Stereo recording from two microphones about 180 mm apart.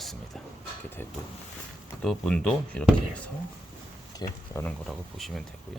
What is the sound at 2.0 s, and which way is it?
Speech, 5° left (ahead or behind).